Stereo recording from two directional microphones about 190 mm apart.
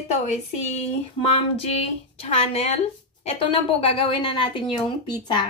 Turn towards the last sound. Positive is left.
turn(degrees=25)  # may be behind; listen again after turning